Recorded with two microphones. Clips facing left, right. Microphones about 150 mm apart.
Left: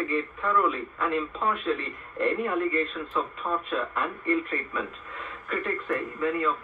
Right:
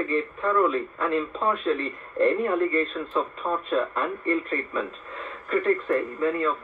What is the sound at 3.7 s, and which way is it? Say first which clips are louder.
Speech: right 4 dB; 30° right (ahead or behind).